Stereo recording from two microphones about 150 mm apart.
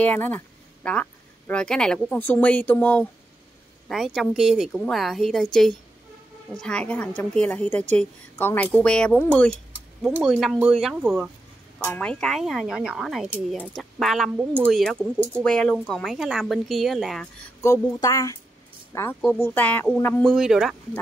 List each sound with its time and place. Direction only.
0.0 s a woman's voice: 10° left (ahead or behind); by 14.7 s 10° right (ahead or behind)
14.7 s a woman's voice: centre (ahead or behind)
17.6 s a woman's voice: 20° left (ahead or behind)
20.2 s a woman's voice: centre (ahead or behind)